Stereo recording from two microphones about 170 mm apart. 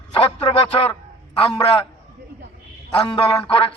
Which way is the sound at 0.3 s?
35° left (ahead or behind).